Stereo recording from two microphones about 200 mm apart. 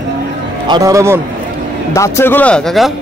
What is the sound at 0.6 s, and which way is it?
Speech, 20° right (ahead or behind).